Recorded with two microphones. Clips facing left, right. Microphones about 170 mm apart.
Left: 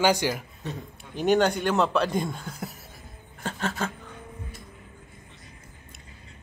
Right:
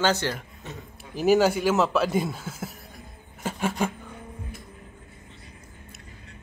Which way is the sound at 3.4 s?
10° right (ahead or behind).